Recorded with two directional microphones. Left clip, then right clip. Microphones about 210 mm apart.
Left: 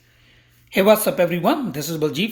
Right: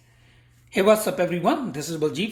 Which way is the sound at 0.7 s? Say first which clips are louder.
Left 3 dB; 20° left (ahead or behind).